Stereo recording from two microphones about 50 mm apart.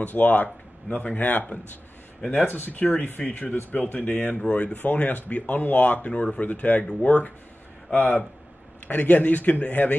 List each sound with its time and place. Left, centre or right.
0.0 s speech: left
4.5 s speech: left
4.7 s speech: left